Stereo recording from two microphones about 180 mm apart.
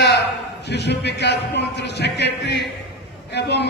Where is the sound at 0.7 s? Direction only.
70° left (ahead or behind).